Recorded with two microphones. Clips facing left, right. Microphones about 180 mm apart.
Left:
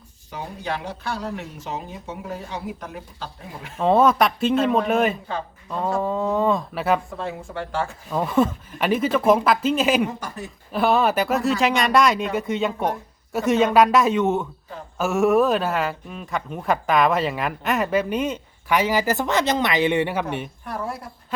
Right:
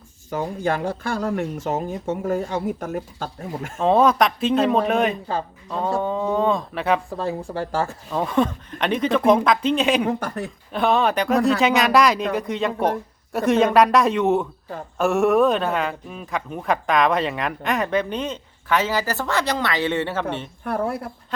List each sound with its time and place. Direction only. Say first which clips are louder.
0.3 s speech: right 6 dB; 50° right (ahead or behind)
3.8 s speech: even; centre (ahead or behind)
7.2 s speech: right 4 dB; 35° right (ahead or behind)
8.1 s speech: left 1 dB; 5° left (ahead or behind)
10.1 s speech: right 7 dB; 60° right (ahead or behind)
10.7 s speech: even; 5° left (ahead or behind)
20.7 s speech: right 8 dB; 55° right (ahead or behind)